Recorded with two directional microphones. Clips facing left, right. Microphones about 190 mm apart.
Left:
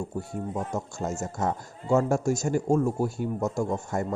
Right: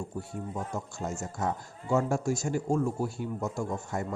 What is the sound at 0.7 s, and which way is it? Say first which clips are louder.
Speech: left 4 dB; 45° left (ahead or behind).